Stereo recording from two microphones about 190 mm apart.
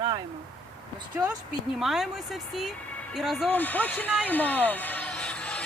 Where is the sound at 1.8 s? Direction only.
Centre (ahead or behind).